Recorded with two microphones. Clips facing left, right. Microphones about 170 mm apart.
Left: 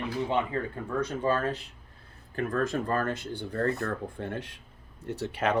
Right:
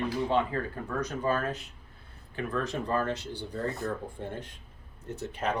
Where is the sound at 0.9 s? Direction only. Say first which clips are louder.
Left 2 dB; 30° left (ahead or behind).